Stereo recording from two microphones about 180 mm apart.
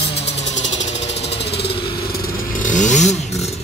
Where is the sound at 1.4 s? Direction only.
65° left (ahead or behind).